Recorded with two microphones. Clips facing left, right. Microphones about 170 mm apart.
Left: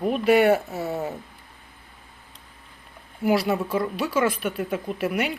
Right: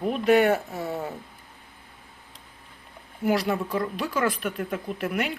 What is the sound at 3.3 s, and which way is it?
Speech, 5° left (ahead or behind).